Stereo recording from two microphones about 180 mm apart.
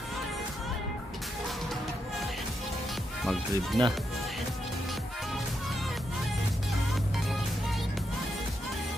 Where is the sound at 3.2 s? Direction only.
Centre (ahead or behind).